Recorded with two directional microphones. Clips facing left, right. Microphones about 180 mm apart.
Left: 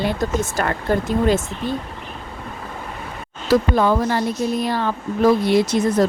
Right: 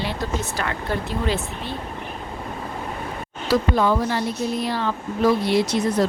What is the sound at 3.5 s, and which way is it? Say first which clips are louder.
Speech: left 3 dB; 50° left (ahead or behind).